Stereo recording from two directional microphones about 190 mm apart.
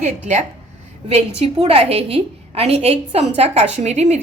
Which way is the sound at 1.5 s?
30° right (ahead or behind).